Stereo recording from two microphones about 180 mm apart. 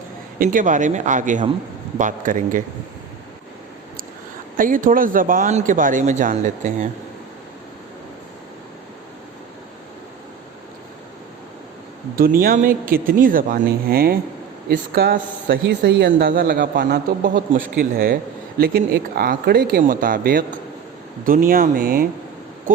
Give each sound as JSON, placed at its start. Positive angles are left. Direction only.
{"t": 0.3, "sound": "speech", "side_deg": -50}
{"t": 4.5, "sound": "speech", "side_deg": -50}
{"t": 12.1, "sound": "speech", "side_deg": -55}
{"t": 16.1, "sound": "speech", "side_deg": -55}